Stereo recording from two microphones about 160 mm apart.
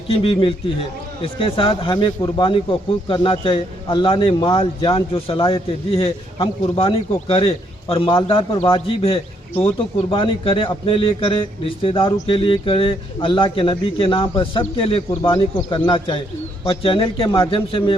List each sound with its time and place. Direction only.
0.1 s a man's voice: 35° left (ahead or behind)